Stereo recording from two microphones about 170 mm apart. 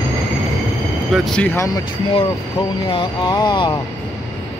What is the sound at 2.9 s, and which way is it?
Speech, 30° left (ahead or behind).